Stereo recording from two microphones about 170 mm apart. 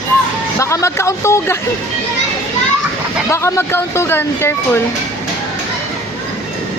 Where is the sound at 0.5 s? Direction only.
15° left (ahead or behind).